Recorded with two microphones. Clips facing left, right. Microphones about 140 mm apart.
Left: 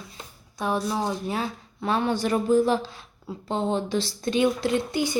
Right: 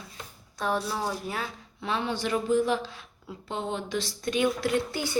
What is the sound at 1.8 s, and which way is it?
Speech, 45° left (ahead or behind).